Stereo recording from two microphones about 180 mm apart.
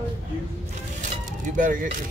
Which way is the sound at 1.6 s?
45° right (ahead or behind).